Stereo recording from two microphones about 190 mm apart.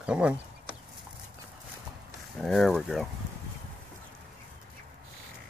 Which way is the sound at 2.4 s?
Centre (ahead or behind).